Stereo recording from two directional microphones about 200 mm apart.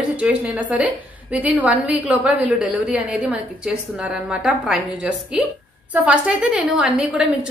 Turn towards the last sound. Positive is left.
turn(degrees=-5)  # may be behind; listen again after turning